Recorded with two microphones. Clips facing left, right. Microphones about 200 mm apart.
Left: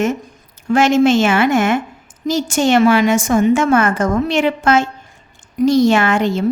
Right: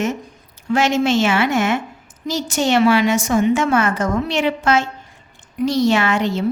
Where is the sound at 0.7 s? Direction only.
50° left (ahead or behind).